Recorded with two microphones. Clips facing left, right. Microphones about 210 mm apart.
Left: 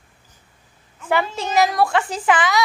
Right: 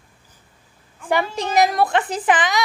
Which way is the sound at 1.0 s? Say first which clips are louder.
Even; 15° right (ahead or behind).